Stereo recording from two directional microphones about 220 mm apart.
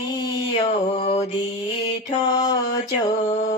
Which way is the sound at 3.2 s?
35° left (ahead or behind).